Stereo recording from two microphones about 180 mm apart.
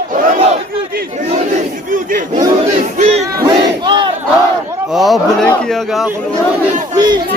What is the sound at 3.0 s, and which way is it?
Battle cry, 40° right (ahead or behind).